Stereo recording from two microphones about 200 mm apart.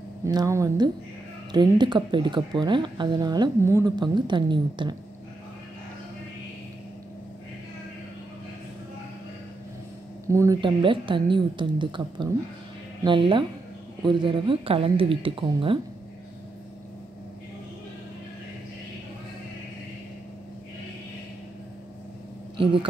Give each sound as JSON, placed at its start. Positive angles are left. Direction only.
{"t": 0.2, "sound": "speech", "side_deg": -15}
{"t": 10.2, "sound": "speech", "side_deg": -15}
{"t": 22.6, "sound": "speech", "side_deg": -25}